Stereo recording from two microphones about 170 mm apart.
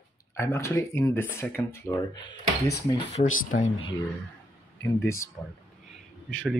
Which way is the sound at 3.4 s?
50° left (ahead or behind).